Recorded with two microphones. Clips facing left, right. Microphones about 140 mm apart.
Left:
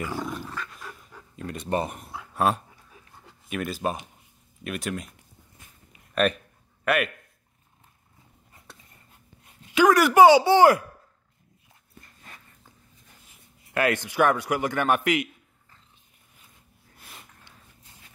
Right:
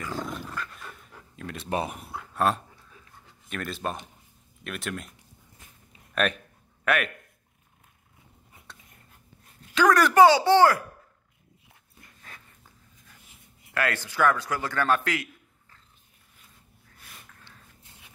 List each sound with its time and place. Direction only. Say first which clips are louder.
0.0 s dog: left 2 dB; 10° left (ahead or behind)
0.3 s dog: left 1 dB; centre (ahead or behind)
3.4 s speech: left 4 dB; 5° left (ahead or behind)
6.1 s a sound: left 3 dB; centre (ahead or behind)
9.8 s a man's voice: left 2 dB; 10° left (ahead or behind)
13.7 s a man's voice: left 4 dB; 20° left (ahead or behind)